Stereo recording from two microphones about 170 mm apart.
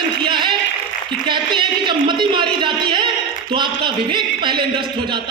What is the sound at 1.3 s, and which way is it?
Speech, 30° right (ahead or behind).